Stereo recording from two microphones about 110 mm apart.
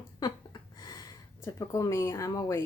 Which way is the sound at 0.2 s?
35° left (ahead or behind).